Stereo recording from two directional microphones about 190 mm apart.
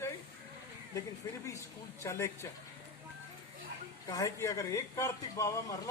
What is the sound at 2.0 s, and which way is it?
Speech, 15° left (ahead or behind).